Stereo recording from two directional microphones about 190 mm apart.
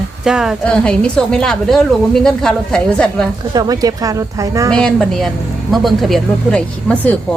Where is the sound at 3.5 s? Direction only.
20° right (ahead or behind).